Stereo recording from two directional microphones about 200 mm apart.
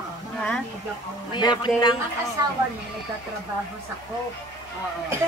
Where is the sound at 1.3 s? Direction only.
20° left (ahead or behind).